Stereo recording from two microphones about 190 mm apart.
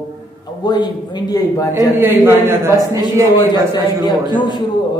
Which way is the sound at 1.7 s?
10° right (ahead or behind).